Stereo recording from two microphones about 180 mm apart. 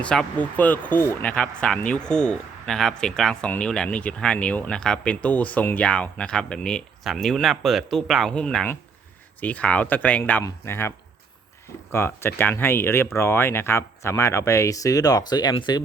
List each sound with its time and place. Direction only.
0.0 s speech: 5° left (ahead or behind); by 15.8 s 25° left (ahead or behind)